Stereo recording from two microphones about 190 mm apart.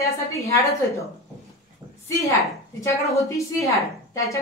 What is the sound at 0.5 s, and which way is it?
Speech, 15° left (ahead or behind).